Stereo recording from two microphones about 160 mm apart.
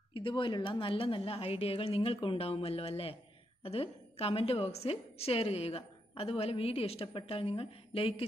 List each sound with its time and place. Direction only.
0.1 s a woman's voice: 30° left (ahead or behind)